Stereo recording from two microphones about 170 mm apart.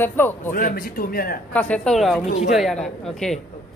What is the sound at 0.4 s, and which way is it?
A man's voice, 55° left (ahead or behind).